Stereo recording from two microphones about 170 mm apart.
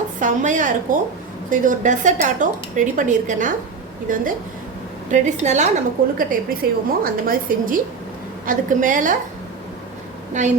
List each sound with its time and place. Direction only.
0.2 s speech: 50° right (ahead or behind)
6.1 s a woman's voice: 60° right (ahead or behind)
10.4 s speech: 45° right (ahead or behind)